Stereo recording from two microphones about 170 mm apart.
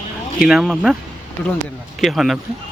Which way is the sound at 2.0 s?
Centre (ahead or behind).